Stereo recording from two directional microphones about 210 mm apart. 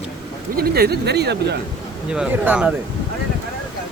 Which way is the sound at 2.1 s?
5° right (ahead or behind).